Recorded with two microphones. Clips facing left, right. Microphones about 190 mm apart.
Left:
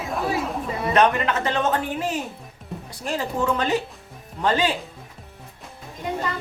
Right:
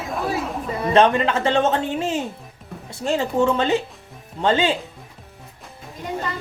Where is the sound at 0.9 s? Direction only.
30° right (ahead or behind).